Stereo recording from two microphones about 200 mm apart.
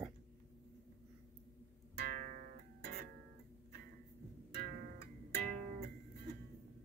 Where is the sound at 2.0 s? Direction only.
40° right (ahead or behind).